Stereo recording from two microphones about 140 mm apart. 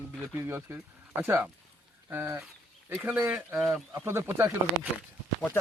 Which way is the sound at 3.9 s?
15° right (ahead or behind).